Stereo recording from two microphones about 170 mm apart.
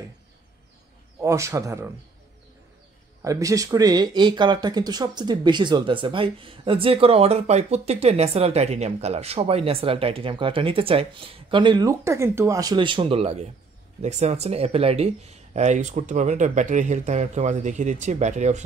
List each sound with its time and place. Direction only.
1.2 s speech: 15° right (ahead or behind)
3.2 s speech: 20° right (ahead or behind); by 18.6 s 45° right (ahead or behind)